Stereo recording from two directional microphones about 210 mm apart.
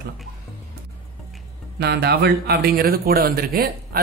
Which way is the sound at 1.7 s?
50° right (ahead or behind).